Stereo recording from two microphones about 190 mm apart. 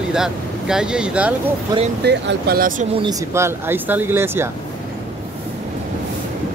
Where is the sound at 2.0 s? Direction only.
60° right (ahead or behind).